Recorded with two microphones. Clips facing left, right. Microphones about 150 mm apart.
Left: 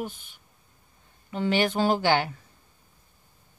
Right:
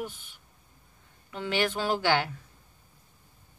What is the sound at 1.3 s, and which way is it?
Speech, 30° left (ahead or behind).